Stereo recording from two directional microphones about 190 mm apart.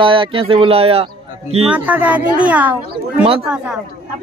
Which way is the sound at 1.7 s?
10° right (ahead or behind).